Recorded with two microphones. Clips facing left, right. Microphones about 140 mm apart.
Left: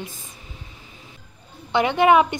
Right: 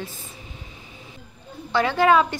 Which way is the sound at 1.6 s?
20° left (ahead or behind).